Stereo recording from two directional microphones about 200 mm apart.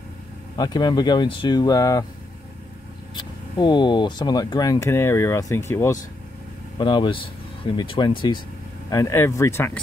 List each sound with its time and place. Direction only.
0.6 s speech: 20° left (ahead or behind)
3.2 s speech: 25° left (ahead or behind)
6.8 s speech: 25° left (ahead or behind)